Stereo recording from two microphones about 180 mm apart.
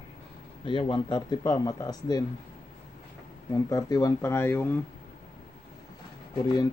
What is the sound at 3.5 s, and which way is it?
Speech, 20° left (ahead or behind).